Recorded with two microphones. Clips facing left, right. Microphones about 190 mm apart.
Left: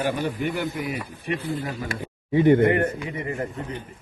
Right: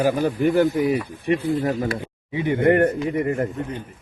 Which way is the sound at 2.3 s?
50° left (ahead or behind).